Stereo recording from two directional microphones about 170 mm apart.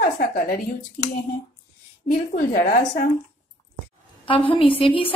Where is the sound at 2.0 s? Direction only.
60° left (ahead or behind).